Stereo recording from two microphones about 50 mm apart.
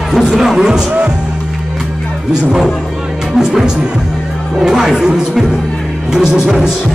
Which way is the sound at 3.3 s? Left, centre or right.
Centre.